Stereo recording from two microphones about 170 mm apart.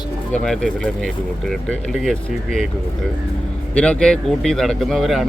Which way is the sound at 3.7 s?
5° left (ahead or behind).